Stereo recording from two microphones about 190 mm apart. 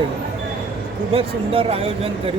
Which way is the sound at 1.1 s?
30° right (ahead or behind).